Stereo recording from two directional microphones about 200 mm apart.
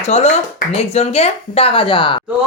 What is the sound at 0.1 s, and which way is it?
A man's voice, 35° left (ahead or behind).